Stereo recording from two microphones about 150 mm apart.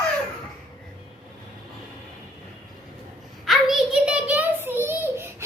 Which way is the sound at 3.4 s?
Centre (ahead or behind).